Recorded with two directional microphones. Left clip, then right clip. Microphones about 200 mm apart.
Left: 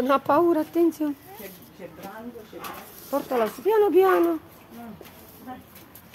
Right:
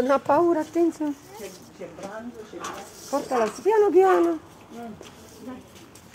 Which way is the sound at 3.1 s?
20° left (ahead or behind).